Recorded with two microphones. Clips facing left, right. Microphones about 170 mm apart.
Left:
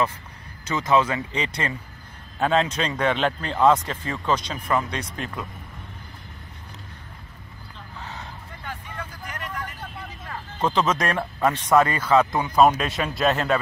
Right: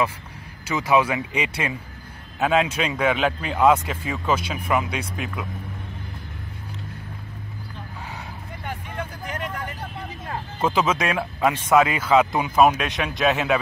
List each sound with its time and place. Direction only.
0.7 s a man's voice: 10° right (ahead or behind)
8.6 s vehicle: 20° right (ahead or behind)
10.6 s speech: 5° right (ahead or behind)